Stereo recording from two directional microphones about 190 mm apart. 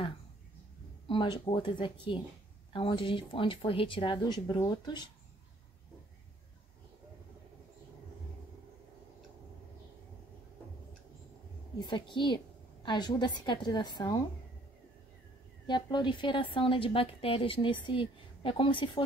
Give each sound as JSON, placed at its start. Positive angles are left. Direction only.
{"t": 1.0, "sound": "a woman's voice", "side_deg": 25}
{"t": 11.9, "sound": "a woman's voice", "side_deg": 25}
{"t": 15.6, "sound": "a woman's voice", "side_deg": 25}